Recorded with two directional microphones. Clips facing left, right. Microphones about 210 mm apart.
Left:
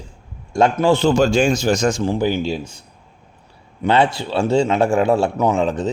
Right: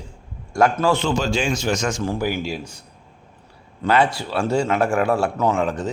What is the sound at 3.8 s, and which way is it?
Speech, 25° left (ahead or behind).